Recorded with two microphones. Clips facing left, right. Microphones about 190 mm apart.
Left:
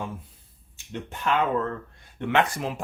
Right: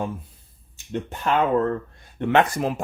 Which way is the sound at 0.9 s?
35° right (ahead or behind).